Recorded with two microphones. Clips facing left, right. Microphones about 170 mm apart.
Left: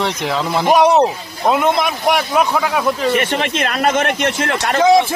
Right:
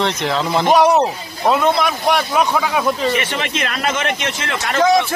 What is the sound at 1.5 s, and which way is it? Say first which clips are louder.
A man's voice: even; 15° left (ahead or behind).